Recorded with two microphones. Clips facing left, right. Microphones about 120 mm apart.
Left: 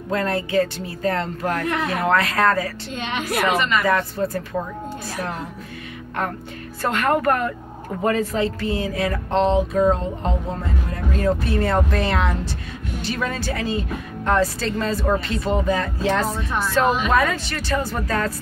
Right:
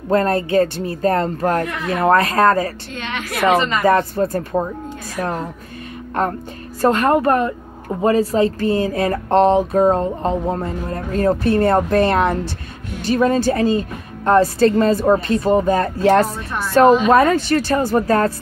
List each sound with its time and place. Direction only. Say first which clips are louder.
0.1 s a woman's voice: right 6 dB; 45° right (ahead or behind)
4.1 s a woman's voice: right 5 dB; 50° right (ahead or behind)
6.8 s a woman's voice: right 6 dB; 35° right (ahead or behind)